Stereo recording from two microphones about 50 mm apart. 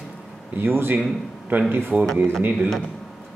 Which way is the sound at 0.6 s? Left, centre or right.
Right.